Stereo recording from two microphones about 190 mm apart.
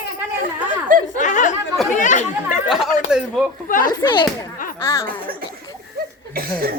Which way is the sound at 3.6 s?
45° left (ahead or behind).